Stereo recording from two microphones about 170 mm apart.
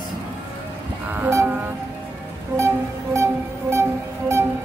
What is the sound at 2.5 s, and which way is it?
Speech, 15° right (ahead or behind).